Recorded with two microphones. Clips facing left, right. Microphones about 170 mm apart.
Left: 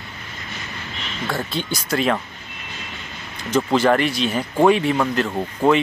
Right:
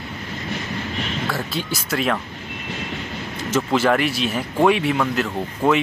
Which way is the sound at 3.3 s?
5° right (ahead or behind).